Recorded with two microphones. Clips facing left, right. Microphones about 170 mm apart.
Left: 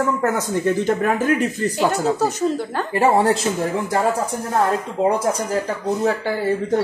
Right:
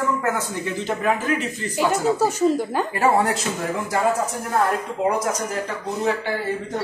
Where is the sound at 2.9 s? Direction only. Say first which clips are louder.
Left 4 dB; 25° left (ahead or behind).